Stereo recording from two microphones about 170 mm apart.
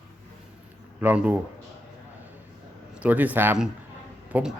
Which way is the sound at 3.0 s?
10° right (ahead or behind).